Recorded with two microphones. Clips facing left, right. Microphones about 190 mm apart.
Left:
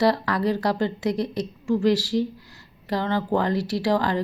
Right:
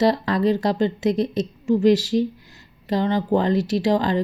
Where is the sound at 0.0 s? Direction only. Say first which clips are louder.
Right 3 dB; 20° right (ahead or behind).